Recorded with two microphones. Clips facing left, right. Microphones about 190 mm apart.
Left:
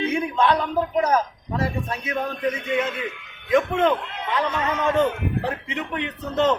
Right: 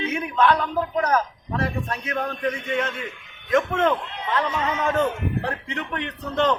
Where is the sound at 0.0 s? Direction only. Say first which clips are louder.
Left 2 dB; 30° left (ahead or behind).